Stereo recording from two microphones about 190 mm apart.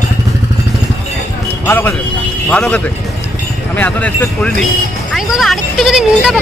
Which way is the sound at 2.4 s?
5° left (ahead or behind).